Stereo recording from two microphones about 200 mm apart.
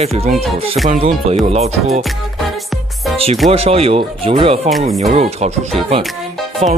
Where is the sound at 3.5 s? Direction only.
30° right (ahead or behind).